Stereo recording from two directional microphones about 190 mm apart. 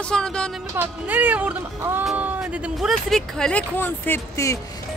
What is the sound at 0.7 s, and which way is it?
Speech, 10° right (ahead or behind).